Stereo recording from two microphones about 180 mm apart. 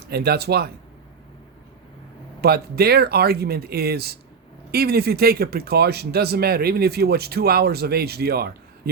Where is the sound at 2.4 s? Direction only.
60° right (ahead or behind).